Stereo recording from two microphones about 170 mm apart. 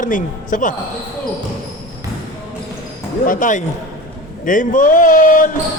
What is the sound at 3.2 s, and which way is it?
A man's voice, 50° left (ahead or behind).